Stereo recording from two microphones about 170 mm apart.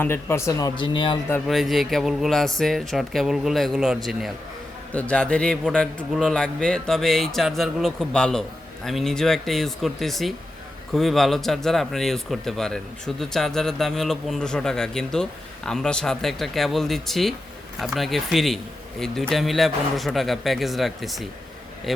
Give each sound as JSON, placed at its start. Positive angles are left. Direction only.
{"t": 0.0, "sound": "speech", "side_deg": 15}
{"t": 1.5, "sound": "speech", "side_deg": 0}